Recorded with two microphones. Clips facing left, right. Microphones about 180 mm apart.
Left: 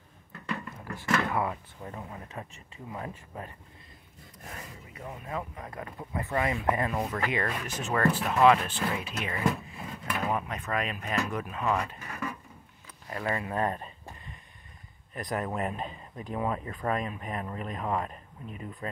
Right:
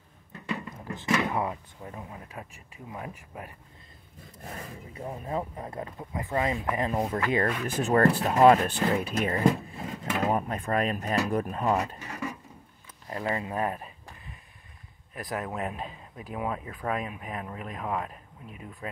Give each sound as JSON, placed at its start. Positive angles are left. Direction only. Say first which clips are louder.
{"t": 0.3, "sound": "drawer open or close", "louder": "right 2 dB", "side_deg": -15}
{"t": 1.8, "sound": "speech", "louder": "left 1 dB", "side_deg": -10}
{"t": 4.9, "sound": "speech", "louder": "right 4 dB", "side_deg": -30}
{"t": 9.7, "sound": "drawer open or close", "louder": "right 3 dB", "side_deg": -35}
{"t": 10.2, "sound": "speech", "louder": "right 4 dB", "side_deg": -40}
{"t": 13.1, "sound": "speech", "louder": "right 1 dB", "side_deg": -25}
{"t": 13.6, "sound": "speech", "louder": "even", "side_deg": -5}
{"t": 15.1, "sound": "speech", "louder": "left 1 dB", "side_deg": 0}